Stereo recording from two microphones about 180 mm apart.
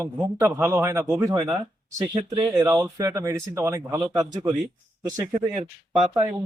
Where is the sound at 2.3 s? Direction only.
20° right (ahead or behind).